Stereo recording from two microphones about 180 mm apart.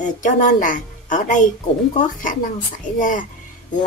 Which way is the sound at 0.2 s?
45° left (ahead or behind).